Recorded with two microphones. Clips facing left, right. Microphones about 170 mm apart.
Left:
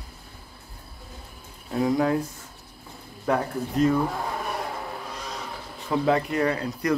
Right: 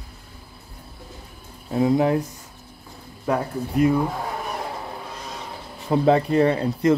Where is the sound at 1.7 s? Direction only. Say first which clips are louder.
Right 4 dB; 25° right (ahead or behind).